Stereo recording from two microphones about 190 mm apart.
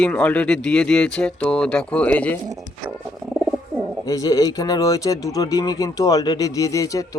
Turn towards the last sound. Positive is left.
turn(degrees=15)  # may be behind; listen again after turning